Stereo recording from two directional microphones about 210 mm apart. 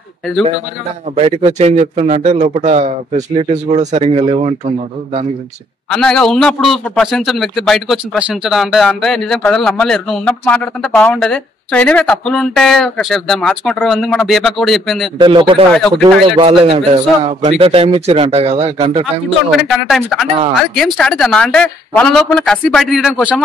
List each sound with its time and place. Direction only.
1.1 s a man's voice: 30° right (ahead or behind)
5.9 s a man's voice: 5° left (ahead or behind)
15.1 s a man's voice: 25° right (ahead or behind)
19.9 s a man's voice: centre (ahead or behind)